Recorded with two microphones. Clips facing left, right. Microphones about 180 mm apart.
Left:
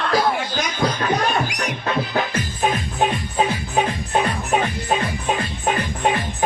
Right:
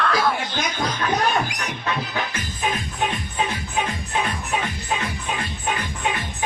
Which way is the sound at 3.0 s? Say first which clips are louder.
Left 6 dB; 40° left (ahead or behind).